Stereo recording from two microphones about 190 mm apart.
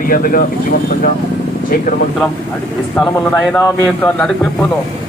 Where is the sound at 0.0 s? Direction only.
45° left (ahead or behind).